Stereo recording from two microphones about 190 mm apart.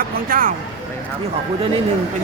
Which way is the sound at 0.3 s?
45° right (ahead or behind).